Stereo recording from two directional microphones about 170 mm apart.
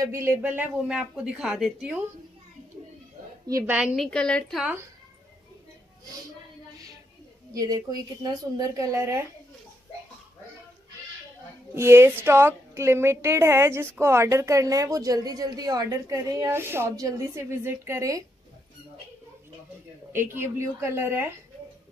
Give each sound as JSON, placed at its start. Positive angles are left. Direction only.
{"t": 0.0, "sound": "speech", "side_deg": -15}
{"t": 3.4, "sound": "a woman's voice", "side_deg": -20}
{"t": 3.7, "sound": "speech", "side_deg": 0}
{"t": 7.5, "sound": "a woman's voice", "side_deg": -20}
{"t": 11.7, "sound": "a woman's voice", "side_deg": -15}
{"t": 20.1, "sound": "a woman's voice", "side_deg": -15}